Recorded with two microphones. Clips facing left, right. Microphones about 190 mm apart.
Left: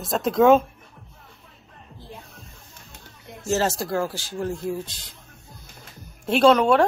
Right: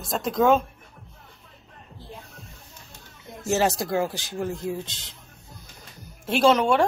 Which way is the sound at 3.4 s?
15° right (ahead or behind).